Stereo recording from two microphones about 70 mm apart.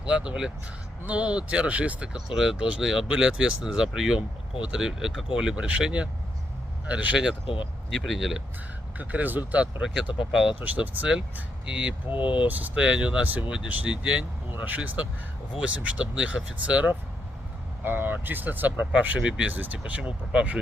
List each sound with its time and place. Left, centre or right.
0.3 s speech: centre
7.9 s speech: centre
9.0 s speech: right
10.6 s speech: right
12.0 s speech: right